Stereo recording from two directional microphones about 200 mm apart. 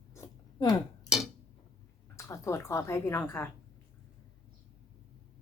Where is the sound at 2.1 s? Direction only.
15° left (ahead or behind).